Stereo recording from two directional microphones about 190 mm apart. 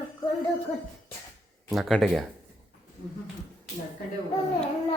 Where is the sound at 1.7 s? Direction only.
Centre (ahead or behind).